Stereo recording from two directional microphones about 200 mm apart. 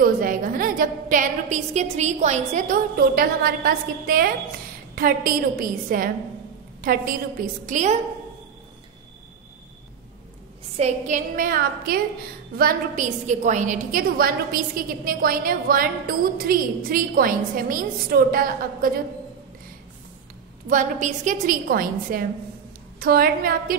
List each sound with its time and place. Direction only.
0.0 s a woman's voice: 45° right (ahead or behind)
10.8 s a woman's voice: 35° right (ahead or behind)
20.6 s a woman's voice: 40° right (ahead or behind)